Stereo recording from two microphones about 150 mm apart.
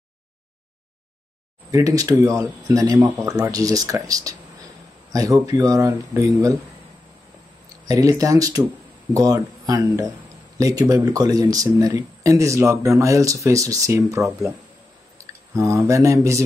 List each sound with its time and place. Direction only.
1.7 s speech: 20° right (ahead or behind)
7.8 s speech: 25° right (ahead or behind)